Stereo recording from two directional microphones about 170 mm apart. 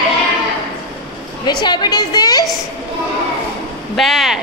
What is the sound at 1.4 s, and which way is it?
A woman's voice, 25° left (ahead or behind).